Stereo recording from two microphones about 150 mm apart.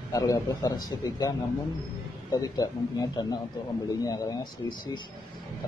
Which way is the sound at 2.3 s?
25° left (ahead or behind).